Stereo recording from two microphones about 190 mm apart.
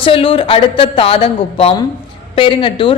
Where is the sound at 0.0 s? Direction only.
30° left (ahead or behind).